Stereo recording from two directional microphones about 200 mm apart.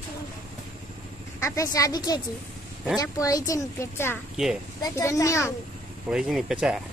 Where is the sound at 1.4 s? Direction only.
15° left (ahead or behind).